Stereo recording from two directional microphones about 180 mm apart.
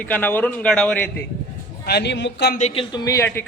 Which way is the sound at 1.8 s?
65° left (ahead or behind).